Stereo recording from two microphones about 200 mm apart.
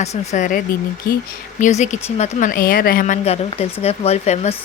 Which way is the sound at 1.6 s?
35° left (ahead or behind).